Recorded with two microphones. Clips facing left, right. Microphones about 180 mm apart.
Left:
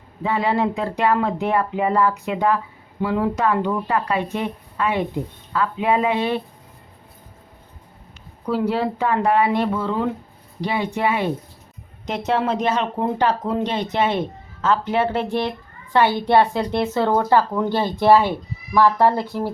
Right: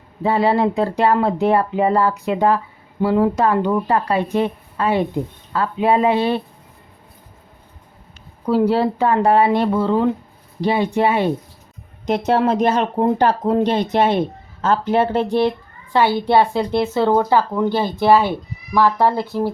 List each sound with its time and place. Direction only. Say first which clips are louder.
0.2 s speech: right 4 dB; 35° right (ahead or behind)
8.4 s speech: right 5 dB; 35° right (ahead or behind)
16.6 s speech: right 3 dB; 10° right (ahead or behind)
19.3 s speech: right 4 dB; 20° right (ahead or behind)